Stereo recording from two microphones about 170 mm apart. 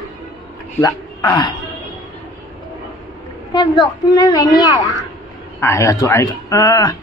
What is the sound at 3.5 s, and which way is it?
A woman's voice, 25° left (ahead or behind).